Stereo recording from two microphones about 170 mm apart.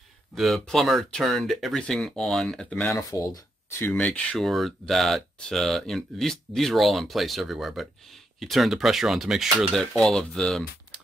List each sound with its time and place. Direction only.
0.3 s speech: centre (ahead or behind)
2.9 s speech: 20° left (ahead or behind); by 10.6 s 5° left (ahead or behind)